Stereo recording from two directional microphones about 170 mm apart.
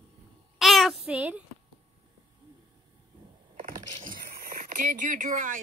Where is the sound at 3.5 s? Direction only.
55° right (ahead or behind).